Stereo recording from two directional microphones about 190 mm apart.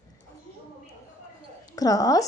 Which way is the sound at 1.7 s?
20° left (ahead or behind).